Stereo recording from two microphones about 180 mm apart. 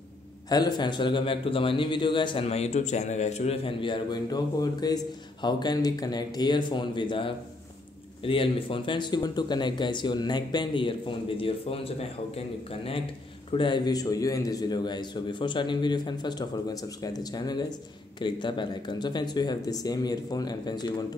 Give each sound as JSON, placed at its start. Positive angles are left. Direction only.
{"t": 0.5, "sound": "a man's voice", "side_deg": 20}
{"t": 13.5, "sound": "a man's voice", "side_deg": 25}